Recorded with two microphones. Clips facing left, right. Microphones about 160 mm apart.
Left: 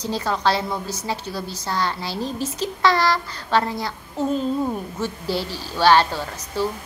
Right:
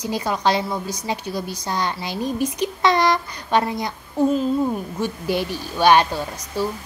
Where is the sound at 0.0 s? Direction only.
15° right (ahead or behind).